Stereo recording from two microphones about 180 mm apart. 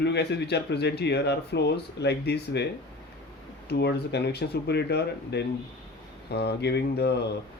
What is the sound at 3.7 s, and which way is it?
Speech, 65° left (ahead or behind).